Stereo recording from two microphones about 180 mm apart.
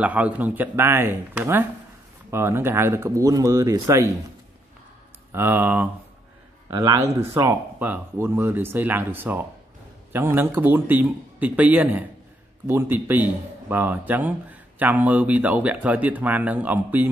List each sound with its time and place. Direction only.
0.0 s speech: 10° right (ahead or behind)
5.3 s speech: 10° right (ahead or behind)
6.7 s speech: 20° right (ahead or behind)